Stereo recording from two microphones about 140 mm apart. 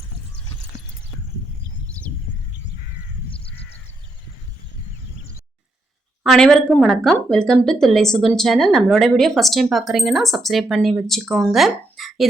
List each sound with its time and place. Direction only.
3.2 s crow: 40° left (ahead or behind)
6.2 s speech: 5° left (ahead or behind)